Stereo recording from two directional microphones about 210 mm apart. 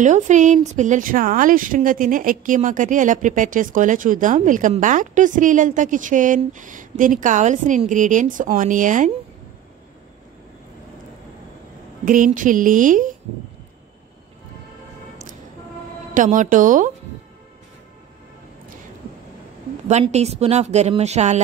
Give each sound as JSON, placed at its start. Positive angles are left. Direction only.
{"t": 0.0, "sound": "a woman's voice", "side_deg": -35}
{"t": 12.0, "sound": "a woman's voice", "side_deg": -40}
{"t": 16.1, "sound": "a woman's voice", "side_deg": -35}
{"t": 19.9, "sound": "a woman's voice", "side_deg": -30}